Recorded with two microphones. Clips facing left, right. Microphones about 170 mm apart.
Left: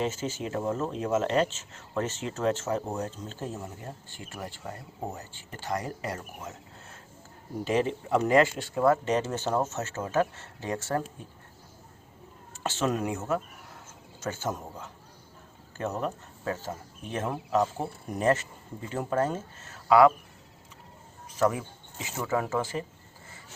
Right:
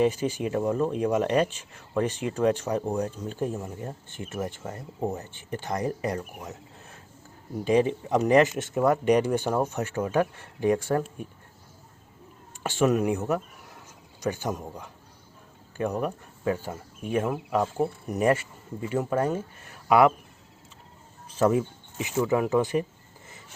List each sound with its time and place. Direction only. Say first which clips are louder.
0.0 s speech: right 7 dB; 15° right (ahead or behind)
7.6 s speech: right 5 dB; 15° right (ahead or behind)
12.5 s speech: right 5 dB; 15° right (ahead or behind)
21.2 s speech: right 4 dB; 25° right (ahead or behind)